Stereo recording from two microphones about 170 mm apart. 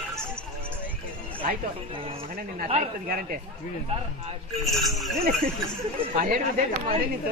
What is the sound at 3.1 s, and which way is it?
Speech, 55° right (ahead or behind).